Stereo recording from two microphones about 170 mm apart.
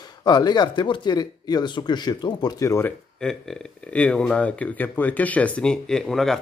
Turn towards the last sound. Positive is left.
turn(degrees=0)  # may be behind; listen again after turning